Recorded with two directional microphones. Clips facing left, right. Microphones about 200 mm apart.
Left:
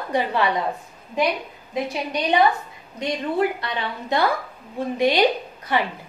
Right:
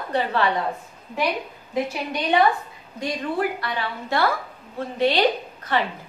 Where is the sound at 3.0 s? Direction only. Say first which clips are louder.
Left 2 dB; 20° left (ahead or behind).